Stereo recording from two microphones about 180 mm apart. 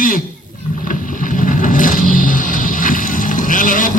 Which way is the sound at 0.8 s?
50° left (ahead or behind).